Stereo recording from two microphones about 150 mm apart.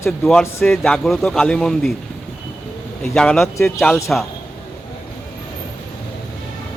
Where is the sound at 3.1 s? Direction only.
5° left (ahead or behind).